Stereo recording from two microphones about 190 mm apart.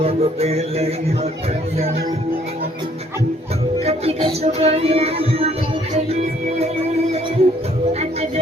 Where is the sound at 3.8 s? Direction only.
35° right (ahead or behind).